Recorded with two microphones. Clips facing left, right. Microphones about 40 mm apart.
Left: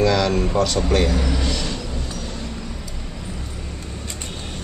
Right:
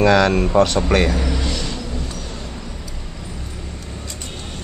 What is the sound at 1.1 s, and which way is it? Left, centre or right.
Speech, centre.